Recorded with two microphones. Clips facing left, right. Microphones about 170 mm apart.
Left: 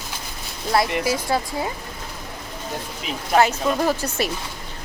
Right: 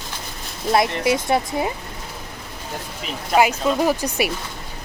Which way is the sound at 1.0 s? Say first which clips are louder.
Right 3 dB; 20° right (ahead or behind).